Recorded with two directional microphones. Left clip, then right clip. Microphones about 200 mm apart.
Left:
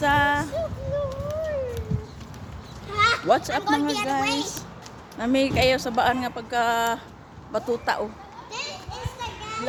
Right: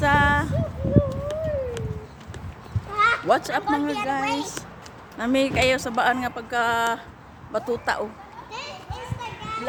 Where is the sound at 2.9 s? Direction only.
45° left (ahead or behind).